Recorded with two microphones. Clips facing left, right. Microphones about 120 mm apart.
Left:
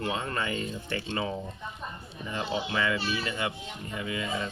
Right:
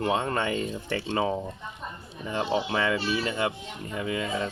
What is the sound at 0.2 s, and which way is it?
Speech, 35° right (ahead or behind).